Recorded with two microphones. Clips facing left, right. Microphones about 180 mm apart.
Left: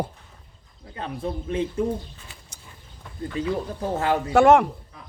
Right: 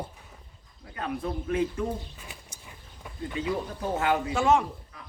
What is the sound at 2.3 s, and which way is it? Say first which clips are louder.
Bird: right 2 dB; 15° right (ahead or behind).